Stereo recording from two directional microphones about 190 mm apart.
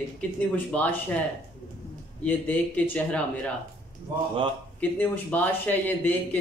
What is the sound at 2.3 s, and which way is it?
Speech, 10° left (ahead or behind).